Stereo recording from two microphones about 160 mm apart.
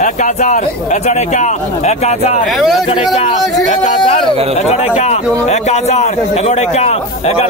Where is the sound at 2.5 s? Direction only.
Centre (ahead or behind).